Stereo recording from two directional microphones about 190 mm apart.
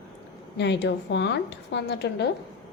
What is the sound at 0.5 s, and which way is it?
A woman's voice, 65° left (ahead or behind).